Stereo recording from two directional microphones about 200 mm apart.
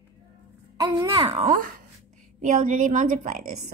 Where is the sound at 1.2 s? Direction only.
35° right (ahead or behind).